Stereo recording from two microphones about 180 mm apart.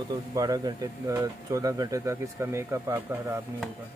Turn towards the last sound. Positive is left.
turn(degrees=-15)  # may be behind; listen again after turning